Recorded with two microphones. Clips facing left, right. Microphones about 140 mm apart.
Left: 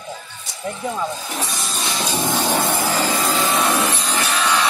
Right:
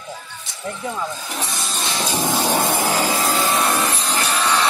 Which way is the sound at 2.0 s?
10° right (ahead or behind).